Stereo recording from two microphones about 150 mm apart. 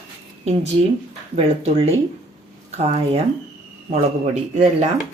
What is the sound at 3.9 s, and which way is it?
Speech, 45° right (ahead or behind).